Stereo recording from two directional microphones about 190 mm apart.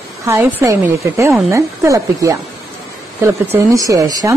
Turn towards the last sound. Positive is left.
turn(degrees=-20)  # may be behind; listen again after turning